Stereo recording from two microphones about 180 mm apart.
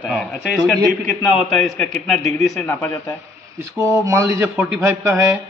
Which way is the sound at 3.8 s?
15° right (ahead or behind).